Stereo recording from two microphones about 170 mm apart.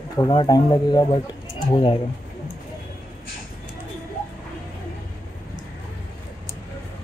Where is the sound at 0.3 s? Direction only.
25° left (ahead or behind).